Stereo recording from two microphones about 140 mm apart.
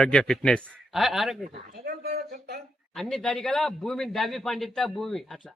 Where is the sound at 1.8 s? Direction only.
90° right.